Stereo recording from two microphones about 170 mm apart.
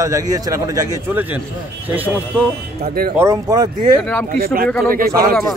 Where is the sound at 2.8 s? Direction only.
70° right (ahead or behind).